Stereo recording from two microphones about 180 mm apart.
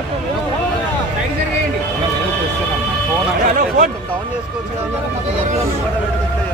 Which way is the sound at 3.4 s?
50° right (ahead or behind).